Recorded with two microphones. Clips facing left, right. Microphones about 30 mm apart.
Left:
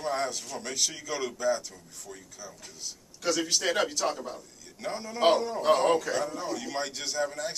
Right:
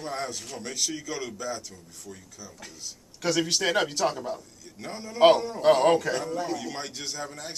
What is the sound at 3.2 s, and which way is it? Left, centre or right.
Speech, right.